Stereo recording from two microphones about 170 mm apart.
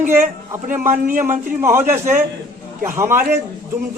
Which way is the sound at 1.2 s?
15° right (ahead or behind).